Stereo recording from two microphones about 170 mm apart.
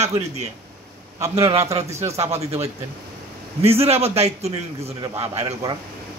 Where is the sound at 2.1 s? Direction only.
40° right (ahead or behind).